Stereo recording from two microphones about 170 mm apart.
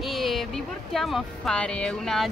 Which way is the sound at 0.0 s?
Centre (ahead or behind).